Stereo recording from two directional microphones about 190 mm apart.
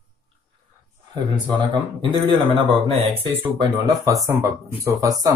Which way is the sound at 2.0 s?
25° right (ahead or behind).